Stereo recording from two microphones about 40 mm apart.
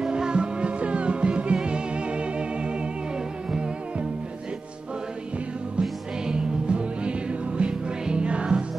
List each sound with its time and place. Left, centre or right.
0.0 s music: centre
5.8 s music: right